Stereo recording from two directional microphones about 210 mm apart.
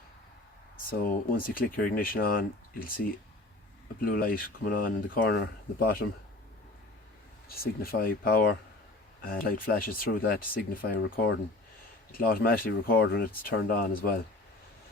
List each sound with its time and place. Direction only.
0.9 s speech: 40° left (ahead or behind)
7.4 s speech: 45° left (ahead or behind)